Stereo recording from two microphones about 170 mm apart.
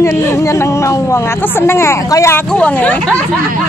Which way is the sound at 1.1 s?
15° left (ahead or behind).